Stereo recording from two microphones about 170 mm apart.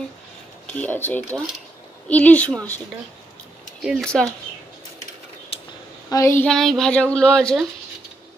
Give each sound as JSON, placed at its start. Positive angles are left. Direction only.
{"t": 0.7, "sound": "speech", "side_deg": 10}
{"t": 3.8, "sound": "speech", "side_deg": 0}
{"t": 5.5, "sound": "a sound", "side_deg": 35}
{"t": 6.0, "sound": "a woman's voice", "side_deg": 20}
{"t": 6.4, "sound": "speech", "side_deg": 0}